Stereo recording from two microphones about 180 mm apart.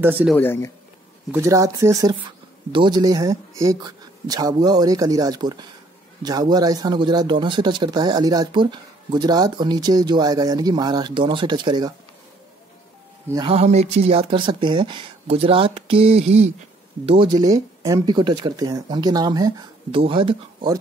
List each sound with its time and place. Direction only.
0.0 s a man's voice: 10° right (ahead or behind)
0.4 s speech: 10° left (ahead or behind)
1.3 s speech: 15° right (ahead or behind)
13.5 s speech: 35° right (ahead or behind)